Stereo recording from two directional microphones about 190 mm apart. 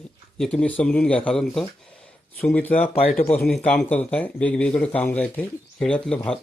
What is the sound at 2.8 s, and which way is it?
Speech, 30° left (ahead or behind).